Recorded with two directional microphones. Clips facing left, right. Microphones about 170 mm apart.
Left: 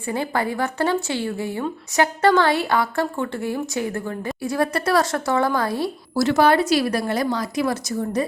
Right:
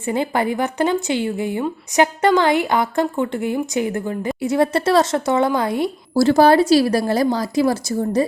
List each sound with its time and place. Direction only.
0.0 s a woman's voice: 20° right (ahead or behind)
6.2 s speech: 35° right (ahead or behind)